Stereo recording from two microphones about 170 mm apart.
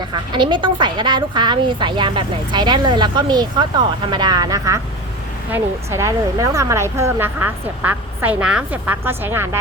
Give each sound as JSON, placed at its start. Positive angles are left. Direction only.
{"t": 0.1, "sound": "a woman's voice", "side_deg": -25}